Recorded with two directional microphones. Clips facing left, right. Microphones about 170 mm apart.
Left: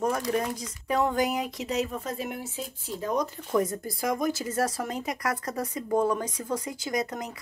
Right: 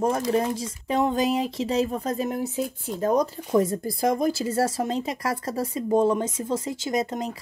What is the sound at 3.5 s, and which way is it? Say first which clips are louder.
Speech: right 3 dB; 25° right (ahead or behind).